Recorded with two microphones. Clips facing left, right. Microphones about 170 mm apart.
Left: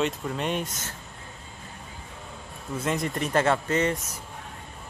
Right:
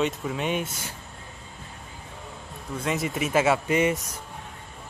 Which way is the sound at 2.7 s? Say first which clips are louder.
Even; centre (ahead or behind).